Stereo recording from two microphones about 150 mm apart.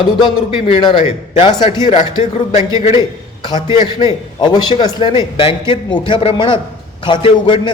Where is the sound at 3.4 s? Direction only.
30° left (ahead or behind).